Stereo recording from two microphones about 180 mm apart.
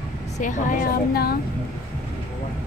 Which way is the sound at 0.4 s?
45° left (ahead or behind).